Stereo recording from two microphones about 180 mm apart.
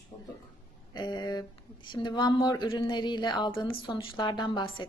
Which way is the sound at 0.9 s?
25° left (ahead or behind).